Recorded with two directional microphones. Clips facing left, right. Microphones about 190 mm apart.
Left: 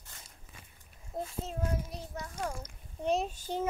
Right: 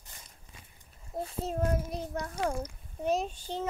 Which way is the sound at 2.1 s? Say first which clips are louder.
Right 5 dB; 75° right (ahead or behind).